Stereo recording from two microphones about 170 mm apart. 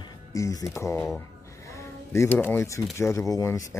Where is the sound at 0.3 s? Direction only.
20° left (ahead or behind).